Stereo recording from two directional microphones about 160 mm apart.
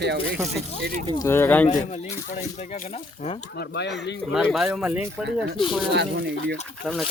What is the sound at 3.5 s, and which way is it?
Speech, 90° left.